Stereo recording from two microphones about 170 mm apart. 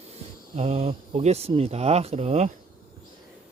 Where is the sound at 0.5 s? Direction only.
40° right (ahead or behind).